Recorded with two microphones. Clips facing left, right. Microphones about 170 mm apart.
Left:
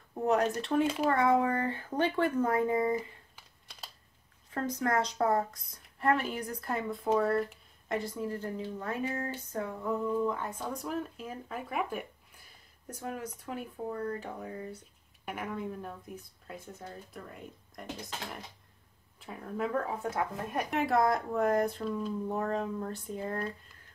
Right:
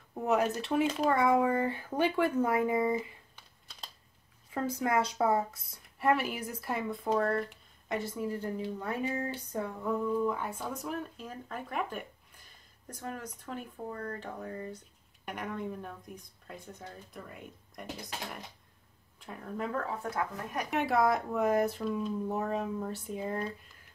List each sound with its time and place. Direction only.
0.1 s speech: 5° right (ahead or behind)
4.6 s a woman's voice: 10° right (ahead or behind)
19.8 s speech: 20° left (ahead or behind)
20.7 s speech: centre (ahead or behind)